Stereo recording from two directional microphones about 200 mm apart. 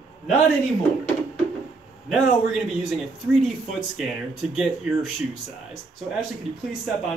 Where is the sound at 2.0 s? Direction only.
Centre (ahead or behind).